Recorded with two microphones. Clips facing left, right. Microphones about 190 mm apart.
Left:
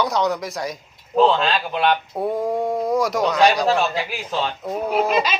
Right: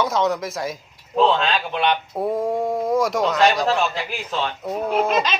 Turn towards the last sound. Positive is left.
turn(degrees=5)  # may be behind; listen again after turning